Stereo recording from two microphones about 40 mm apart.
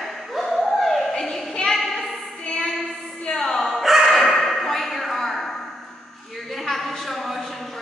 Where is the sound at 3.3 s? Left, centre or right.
Centre.